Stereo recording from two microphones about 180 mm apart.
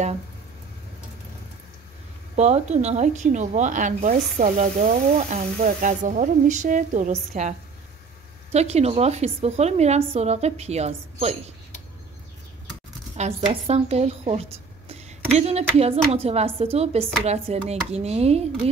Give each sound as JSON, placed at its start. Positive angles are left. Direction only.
{"t": 2.3, "sound": "a woman's voice", "side_deg": -40}
{"t": 13.1, "sound": "a woman's voice", "side_deg": -35}